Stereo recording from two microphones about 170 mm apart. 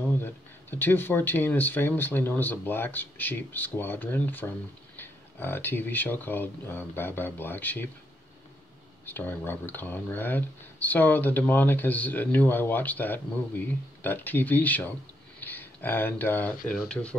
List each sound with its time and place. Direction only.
0.2 s speech: 10° left (ahead or behind)
9.0 s speech: 10° left (ahead or behind)